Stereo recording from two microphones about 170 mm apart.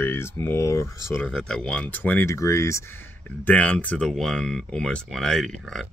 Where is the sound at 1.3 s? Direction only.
5° left (ahead or behind).